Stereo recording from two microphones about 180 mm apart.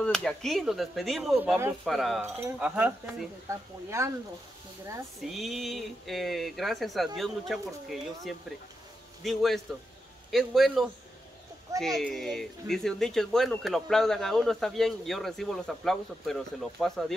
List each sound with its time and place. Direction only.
0.0 s speech: 5° left (ahead or behind); by 4.1 s 15° right (ahead or behind)
5.2 s speech: centre (ahead or behind)
12.0 s speech: centre (ahead or behind)